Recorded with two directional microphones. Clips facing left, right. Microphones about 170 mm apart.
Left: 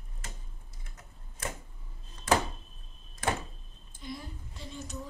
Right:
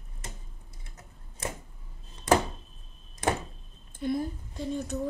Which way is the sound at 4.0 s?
50° right (ahead or behind).